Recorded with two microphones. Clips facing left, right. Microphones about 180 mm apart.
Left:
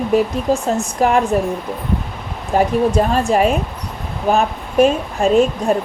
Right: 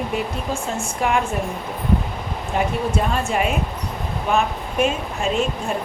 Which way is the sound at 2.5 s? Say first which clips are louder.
Left 8 dB; 40° left (ahead or behind).